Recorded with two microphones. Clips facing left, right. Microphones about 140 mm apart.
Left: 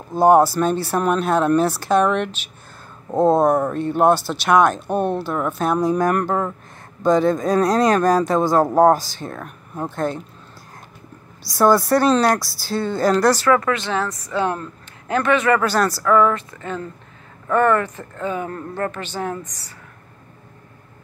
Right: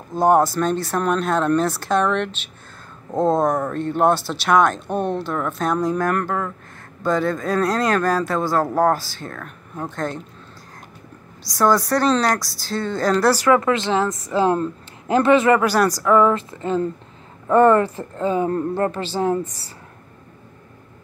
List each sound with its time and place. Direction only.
0.1 s speech: 5° left (ahead or behind)
11.4 s speech: 5° left (ahead or behind)
13.3 s speech: 10° right (ahead or behind)
13.6 s a woman's voice: 25° right (ahead or behind)
15.6 s speech: 10° right (ahead or behind)
16.1 s a woman's voice: 25° right (ahead or behind)